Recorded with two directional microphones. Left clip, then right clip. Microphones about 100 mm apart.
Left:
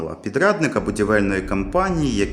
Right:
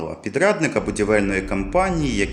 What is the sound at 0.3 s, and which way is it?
Speech, 55° left (ahead or behind).